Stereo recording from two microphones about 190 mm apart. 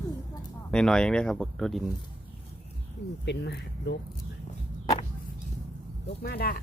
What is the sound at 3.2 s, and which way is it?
Speech, 65° left (ahead or behind).